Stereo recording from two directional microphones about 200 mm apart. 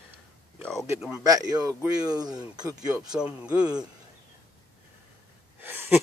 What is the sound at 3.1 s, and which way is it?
Speech, 5° right (ahead or behind).